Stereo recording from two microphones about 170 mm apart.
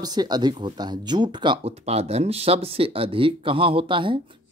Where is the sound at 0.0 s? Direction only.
25° right (ahead or behind).